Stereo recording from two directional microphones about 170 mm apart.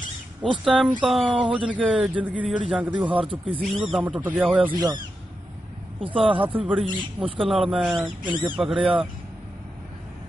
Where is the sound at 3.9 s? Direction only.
5° right (ahead or behind).